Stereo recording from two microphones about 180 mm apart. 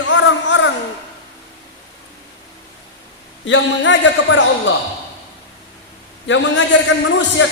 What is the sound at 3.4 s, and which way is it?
A man's voice, 90° left.